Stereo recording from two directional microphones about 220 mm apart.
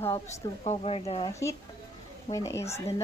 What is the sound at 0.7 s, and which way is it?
Speech, 25° left (ahead or behind).